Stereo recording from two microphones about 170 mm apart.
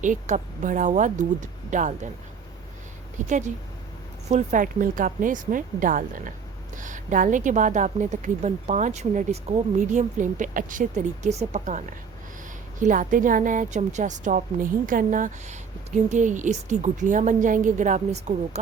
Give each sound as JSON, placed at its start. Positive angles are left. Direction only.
{"t": 0.0, "sound": "a woman's voice", "side_deg": -45}
{"t": 3.2, "sound": "a woman's voice", "side_deg": -45}